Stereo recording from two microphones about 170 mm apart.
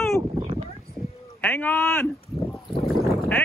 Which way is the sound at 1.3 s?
10° left (ahead or behind).